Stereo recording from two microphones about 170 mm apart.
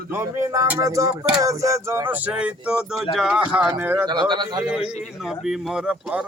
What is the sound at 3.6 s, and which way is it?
Female singing, 10° right (ahead or behind).